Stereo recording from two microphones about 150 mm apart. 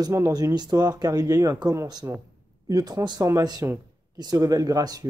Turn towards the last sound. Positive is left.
turn(degrees=-25)  # may be behind; listen again after turning